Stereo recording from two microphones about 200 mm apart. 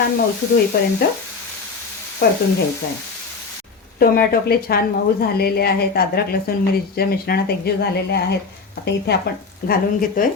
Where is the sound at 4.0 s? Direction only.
50° left (ahead or behind).